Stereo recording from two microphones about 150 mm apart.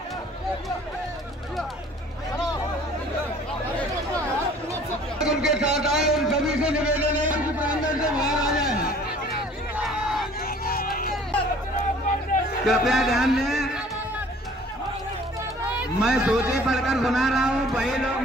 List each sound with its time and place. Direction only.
5.2 s a sound: 5° right (ahead or behind)
9.8 s crowd: centre (ahead or behind)
10.6 s music: 80° left
12.6 s speech: centre (ahead or behind)
15.8 s a man's voice: 5° right (ahead or behind)